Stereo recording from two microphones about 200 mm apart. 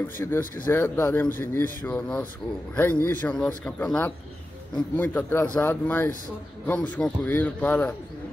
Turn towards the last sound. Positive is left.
turn(degrees=10)  # may be behind; listen again after turning